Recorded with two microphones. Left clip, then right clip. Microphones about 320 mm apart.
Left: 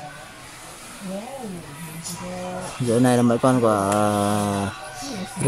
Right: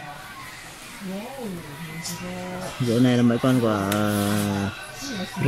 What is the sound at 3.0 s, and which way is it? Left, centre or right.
Speech, left.